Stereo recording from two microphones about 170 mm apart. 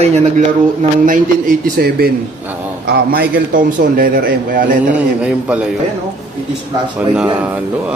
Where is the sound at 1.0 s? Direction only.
55° right (ahead or behind).